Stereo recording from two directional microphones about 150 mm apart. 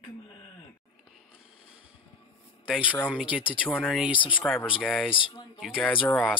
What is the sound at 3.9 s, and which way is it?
Speech, 5° right (ahead or behind).